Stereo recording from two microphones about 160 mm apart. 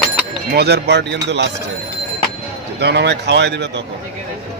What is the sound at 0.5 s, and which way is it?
Speech, 90° right.